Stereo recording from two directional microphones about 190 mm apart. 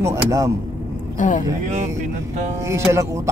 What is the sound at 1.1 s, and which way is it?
Speech, 40° left (ahead or behind).